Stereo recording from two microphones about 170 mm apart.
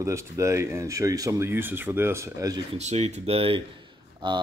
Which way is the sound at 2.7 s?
40° right (ahead or behind).